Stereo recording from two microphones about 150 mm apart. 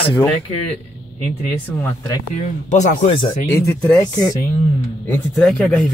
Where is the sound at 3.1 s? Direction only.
35° left (ahead or behind).